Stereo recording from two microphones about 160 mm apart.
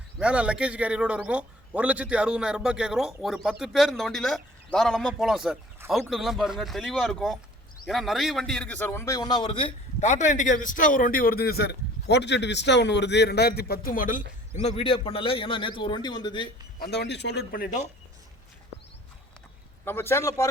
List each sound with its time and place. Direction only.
0.2 s a man's voice: 5° right (ahead or behind); by 14.3 s 60° left (ahead or behind)
14.6 s a man's voice: 40° left (ahead or behind)
16.8 s a man's voice: 90° left; by 17.8 s 55° left (ahead or behind)
19.8 s a man's voice: 15° left (ahead or behind)